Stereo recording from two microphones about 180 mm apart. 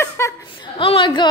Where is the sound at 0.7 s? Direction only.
30° left (ahead or behind).